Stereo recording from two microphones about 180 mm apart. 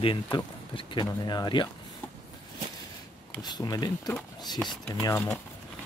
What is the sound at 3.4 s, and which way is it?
Speech, 20° left (ahead or behind).